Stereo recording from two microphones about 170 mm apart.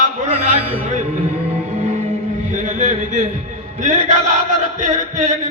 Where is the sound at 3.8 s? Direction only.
45° right (ahead or behind).